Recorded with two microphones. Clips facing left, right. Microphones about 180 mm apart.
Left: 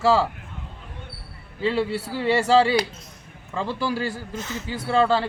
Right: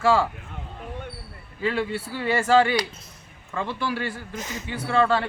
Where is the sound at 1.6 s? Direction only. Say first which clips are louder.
Left 2 dB; 35° left (ahead or behind).